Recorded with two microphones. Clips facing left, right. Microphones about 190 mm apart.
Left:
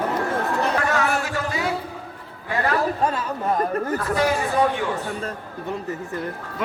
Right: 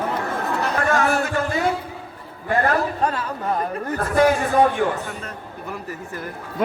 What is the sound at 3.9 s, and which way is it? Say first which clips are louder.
Speech: right 7 dB; 50° right (ahead or behind).